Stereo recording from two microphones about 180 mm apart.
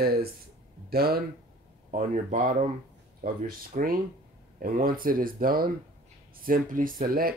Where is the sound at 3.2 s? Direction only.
55° right (ahead or behind).